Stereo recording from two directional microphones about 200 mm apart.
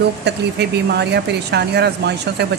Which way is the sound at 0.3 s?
55° right (ahead or behind).